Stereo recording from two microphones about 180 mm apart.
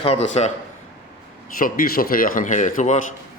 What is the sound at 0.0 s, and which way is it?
Speech, 35° left (ahead or behind).